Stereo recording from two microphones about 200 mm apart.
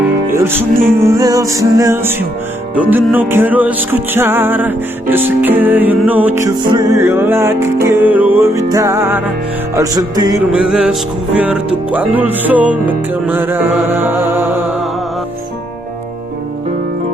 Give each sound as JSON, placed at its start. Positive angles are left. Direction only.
{"t": 0.3, "sound": "music", "side_deg": -10}
{"t": 10.5, "sound": "music", "side_deg": -5}